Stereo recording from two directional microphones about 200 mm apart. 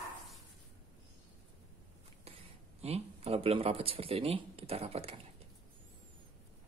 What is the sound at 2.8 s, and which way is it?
Speech, 30° right (ahead or behind).